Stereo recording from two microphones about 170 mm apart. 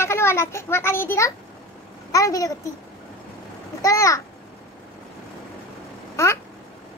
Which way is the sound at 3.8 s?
20° left (ahead or behind).